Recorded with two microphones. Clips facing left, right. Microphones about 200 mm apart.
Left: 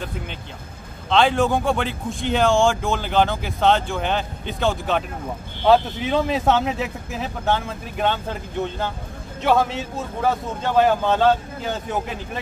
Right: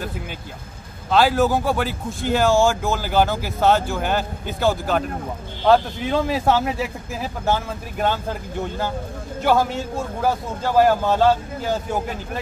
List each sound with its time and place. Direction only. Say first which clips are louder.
1.1 s a man's voice: right 1 dB; 5° right (ahead or behind)